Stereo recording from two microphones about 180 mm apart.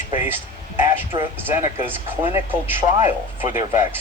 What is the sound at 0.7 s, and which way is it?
Speech, 10° right (ahead or behind).